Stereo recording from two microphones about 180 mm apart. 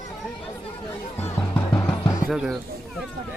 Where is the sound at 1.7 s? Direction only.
15° left (ahead or behind).